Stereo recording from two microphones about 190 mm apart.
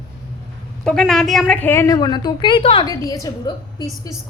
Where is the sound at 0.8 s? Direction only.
Centre (ahead or behind).